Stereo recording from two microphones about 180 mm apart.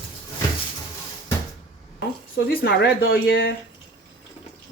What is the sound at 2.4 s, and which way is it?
Speech, 65° left (ahead or behind).